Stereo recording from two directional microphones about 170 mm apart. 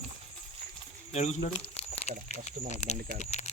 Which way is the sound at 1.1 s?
40° left (ahead or behind).